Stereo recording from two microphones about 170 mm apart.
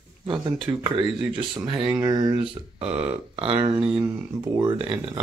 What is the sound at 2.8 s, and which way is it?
Burping, 10° right (ahead or behind).